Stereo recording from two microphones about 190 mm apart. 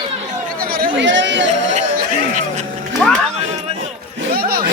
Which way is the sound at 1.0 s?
75° right (ahead or behind).